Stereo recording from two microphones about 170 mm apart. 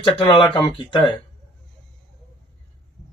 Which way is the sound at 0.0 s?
30° left (ahead or behind).